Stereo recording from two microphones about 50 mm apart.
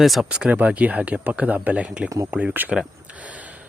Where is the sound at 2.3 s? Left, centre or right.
Right.